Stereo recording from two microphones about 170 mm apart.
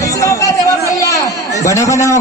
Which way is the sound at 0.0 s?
20° left (ahead or behind).